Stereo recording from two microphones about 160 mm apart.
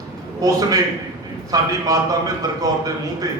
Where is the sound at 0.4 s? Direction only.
20° right (ahead or behind).